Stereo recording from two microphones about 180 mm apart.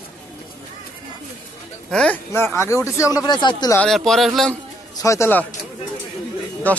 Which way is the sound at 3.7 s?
5° left (ahead or behind).